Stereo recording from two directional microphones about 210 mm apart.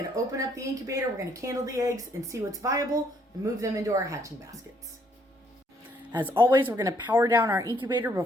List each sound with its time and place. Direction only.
0.3 s speech: 15° right (ahead or behind)
6.1 s speech: 10° right (ahead or behind)